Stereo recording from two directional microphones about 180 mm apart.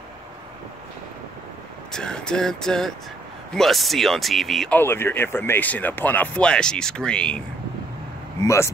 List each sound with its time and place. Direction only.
1.9 s speech: 5° left (ahead or behind)
8.4 s speech: 15° left (ahead or behind)